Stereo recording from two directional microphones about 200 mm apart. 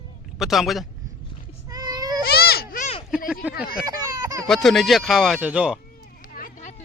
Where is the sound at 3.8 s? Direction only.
15° right (ahead or behind).